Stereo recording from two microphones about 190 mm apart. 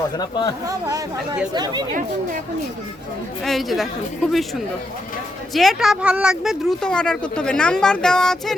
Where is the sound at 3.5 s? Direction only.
Centre (ahead or behind).